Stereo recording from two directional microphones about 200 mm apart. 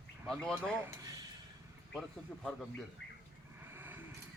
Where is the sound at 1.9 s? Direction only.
Centre (ahead or behind).